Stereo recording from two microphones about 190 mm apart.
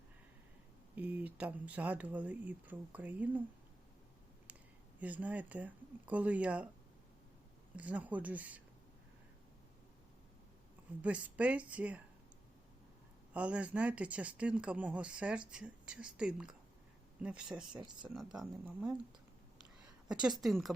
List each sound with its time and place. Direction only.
0.9 s speech: 10° right (ahead or behind)
4.9 s speech: 10° right (ahead or behind)
7.8 s speech: 5° right (ahead or behind)
11.0 s speech: 5° right (ahead or behind)
13.3 s speech: 5° right (ahead or behind)
17.7 s speech: 25° right (ahead or behind)
18.1 s speech: centre (ahead or behind)
20.2 s speech: centre (ahead or behind)